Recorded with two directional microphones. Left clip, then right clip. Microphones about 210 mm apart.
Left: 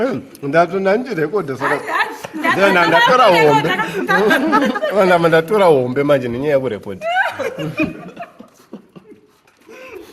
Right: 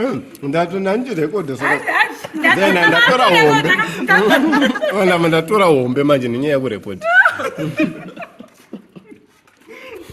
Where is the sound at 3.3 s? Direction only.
15° left (ahead or behind).